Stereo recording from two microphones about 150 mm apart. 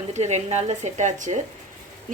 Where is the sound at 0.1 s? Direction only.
50° right (ahead or behind).